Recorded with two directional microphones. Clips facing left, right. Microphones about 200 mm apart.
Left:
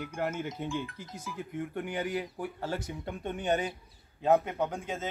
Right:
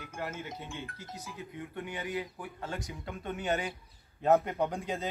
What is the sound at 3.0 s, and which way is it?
Speech, 25° left (ahead or behind).